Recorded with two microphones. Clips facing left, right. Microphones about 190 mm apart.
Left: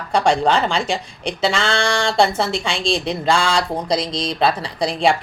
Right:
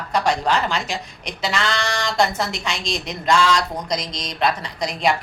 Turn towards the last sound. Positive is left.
turn(degrees=30)  # may be behind; listen again after turning